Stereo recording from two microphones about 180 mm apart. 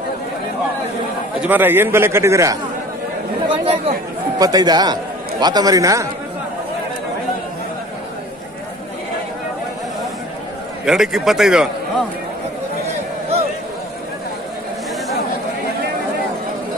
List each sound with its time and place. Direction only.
1.4 s a man's voice: 10° right (ahead or behind)
3.4 s chatter: 30° right (ahead or behind)
4.4 s a man's voice: 20° right (ahead or behind)
10.9 s a man's voice: centre (ahead or behind)